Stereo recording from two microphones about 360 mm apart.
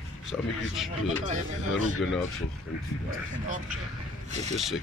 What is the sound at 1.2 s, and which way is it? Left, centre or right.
Speech, centre.